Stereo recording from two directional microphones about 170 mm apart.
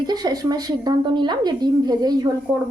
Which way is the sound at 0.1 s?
25° right (ahead or behind).